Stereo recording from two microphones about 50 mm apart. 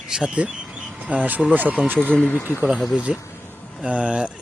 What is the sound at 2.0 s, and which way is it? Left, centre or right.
Speech, left.